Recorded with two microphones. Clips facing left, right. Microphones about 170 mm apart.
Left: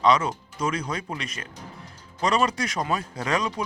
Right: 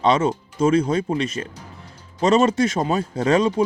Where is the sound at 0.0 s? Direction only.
25° right (ahead or behind).